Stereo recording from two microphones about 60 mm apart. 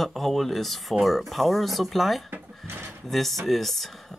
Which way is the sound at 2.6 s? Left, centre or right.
Right.